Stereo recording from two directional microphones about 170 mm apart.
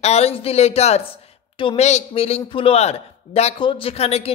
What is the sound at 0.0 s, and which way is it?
Speech, 40° left (ahead or behind).